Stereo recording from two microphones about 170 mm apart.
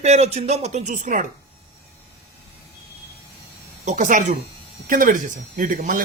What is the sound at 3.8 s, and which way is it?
Speech, 45° right (ahead or behind).